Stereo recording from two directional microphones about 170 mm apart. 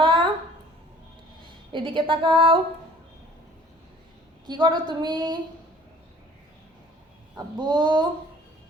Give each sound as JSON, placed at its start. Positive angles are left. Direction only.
{"t": 0.0, "sound": "a sound", "side_deg": -30}
{"t": 1.7, "sound": "a woman's voice", "side_deg": -30}
{"t": 4.4, "sound": "a woman's voice", "side_deg": -25}
{"t": 7.3, "sound": "a woman's voice", "side_deg": -25}